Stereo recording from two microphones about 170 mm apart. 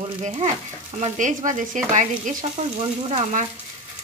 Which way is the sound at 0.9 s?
50° right (ahead or behind).